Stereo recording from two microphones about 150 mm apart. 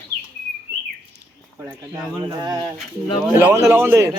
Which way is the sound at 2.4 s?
25° right (ahead or behind).